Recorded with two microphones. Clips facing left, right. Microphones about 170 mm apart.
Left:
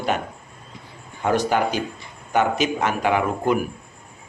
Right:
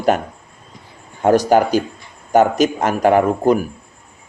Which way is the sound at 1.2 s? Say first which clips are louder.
Right 7 dB; 40° right (ahead or behind).